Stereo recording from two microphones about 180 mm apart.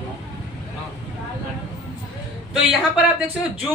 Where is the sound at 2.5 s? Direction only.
5° right (ahead or behind).